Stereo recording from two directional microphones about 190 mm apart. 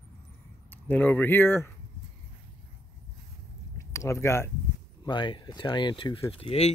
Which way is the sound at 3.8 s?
15° left (ahead or behind).